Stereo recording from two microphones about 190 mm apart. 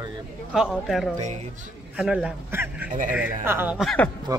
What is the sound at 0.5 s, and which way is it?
Speech, centre (ahead or behind).